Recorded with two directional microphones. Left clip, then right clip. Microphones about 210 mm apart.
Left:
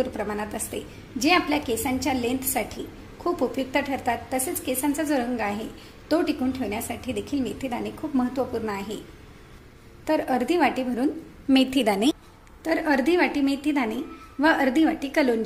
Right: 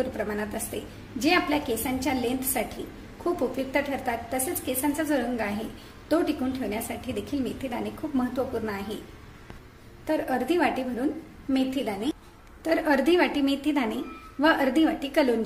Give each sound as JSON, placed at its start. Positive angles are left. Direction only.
{"t": 0.2, "sound": "a woman's voice", "side_deg": 10}
{"t": 10.0, "sound": "a woman's voice", "side_deg": 20}
{"t": 11.5, "sound": "a woman's voice", "side_deg": 35}
{"t": 12.6, "sound": "a woman's voice", "side_deg": 5}